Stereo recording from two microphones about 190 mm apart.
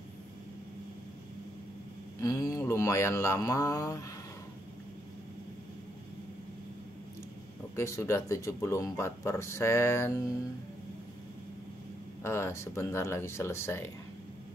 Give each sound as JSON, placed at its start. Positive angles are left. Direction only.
{"t": 2.1, "sound": "speech", "side_deg": 15}
{"t": 7.7, "sound": "speech", "side_deg": 15}
{"t": 12.2, "sound": "speech", "side_deg": 15}